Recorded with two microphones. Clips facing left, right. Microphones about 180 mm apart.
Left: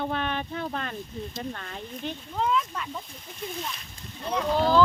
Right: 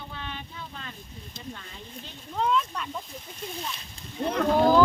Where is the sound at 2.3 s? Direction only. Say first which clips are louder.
Right 1 dB; 5° left (ahead or behind).